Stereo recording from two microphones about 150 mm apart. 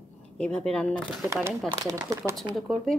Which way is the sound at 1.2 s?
15° right (ahead or behind).